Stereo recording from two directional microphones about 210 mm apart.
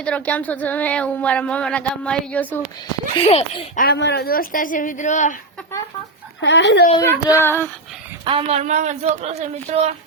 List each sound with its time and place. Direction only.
0.0 s speech: 5° left (ahead or behind)
3.2 s a child's voice: 30° left (ahead or behind)
3.8 s a woman's voice: 50° left (ahead or behind); by 5.4 s 35° left (ahead or behind)
6.4 s speech: 60° left (ahead or behind)
7.0 s speech: 10° left (ahead or behind)
8.2 s speech: 25° right (ahead or behind)